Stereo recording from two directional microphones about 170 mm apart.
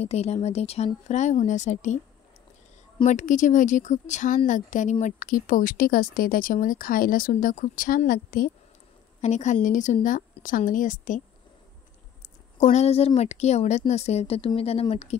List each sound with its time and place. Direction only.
0.0 s a woman's voice: 40° left (ahead or behind)
3.1 s speech: 45° left (ahead or behind)
9.2 s speech: 45° left (ahead or behind)
12.5 s a woman's voice: 40° left (ahead or behind)